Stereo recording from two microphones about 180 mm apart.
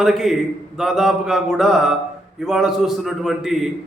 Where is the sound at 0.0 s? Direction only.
Centre (ahead or behind).